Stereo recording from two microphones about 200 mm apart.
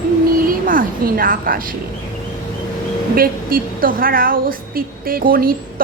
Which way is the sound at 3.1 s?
45° right (ahead or behind).